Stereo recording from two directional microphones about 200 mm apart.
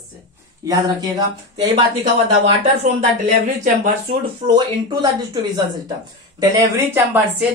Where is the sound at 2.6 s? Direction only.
35° right (ahead or behind).